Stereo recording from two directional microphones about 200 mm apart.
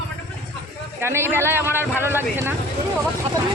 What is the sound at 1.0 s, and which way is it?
Speech, 10° right (ahead or behind).